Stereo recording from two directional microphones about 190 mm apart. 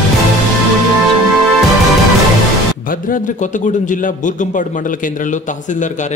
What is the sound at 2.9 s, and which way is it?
A man's voice, 45° left (ahead or behind).